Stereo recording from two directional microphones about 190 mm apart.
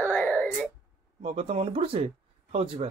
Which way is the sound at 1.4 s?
30° right (ahead or behind).